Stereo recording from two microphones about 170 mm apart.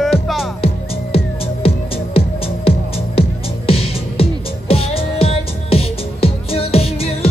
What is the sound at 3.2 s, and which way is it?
Music, 35° left (ahead or behind).